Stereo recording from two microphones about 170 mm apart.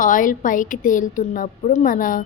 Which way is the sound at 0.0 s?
50° left (ahead or behind).